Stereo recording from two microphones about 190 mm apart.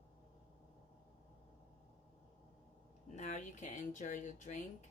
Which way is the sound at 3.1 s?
40° left (ahead or behind).